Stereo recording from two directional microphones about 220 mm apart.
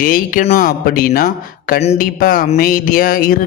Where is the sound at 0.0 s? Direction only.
40° left (ahead or behind).